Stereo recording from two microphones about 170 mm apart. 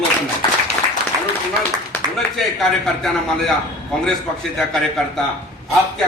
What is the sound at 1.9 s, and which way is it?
A man's voice, 5° left (ahead or behind).